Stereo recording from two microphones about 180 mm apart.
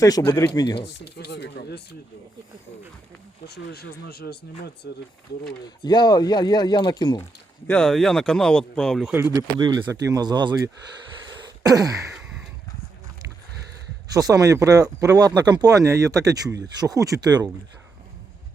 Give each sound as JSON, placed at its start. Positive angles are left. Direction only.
{"t": 0.0, "sound": "speech", "side_deg": 20}
{"t": 0.8, "sound": "speech", "side_deg": 65}
{"t": 3.4, "sound": "speech", "side_deg": 65}
{"t": 5.6, "sound": "speech", "side_deg": 25}
{"t": 7.7, "sound": "speech", "side_deg": 5}
{"t": 9.1, "sound": "speech", "side_deg": -15}
{"t": 11.3, "sound": "throat clearing", "side_deg": -20}
{"t": 12.1, "sound": "a sound", "side_deg": 0}
{"t": 14.1, "sound": "speech", "side_deg": -20}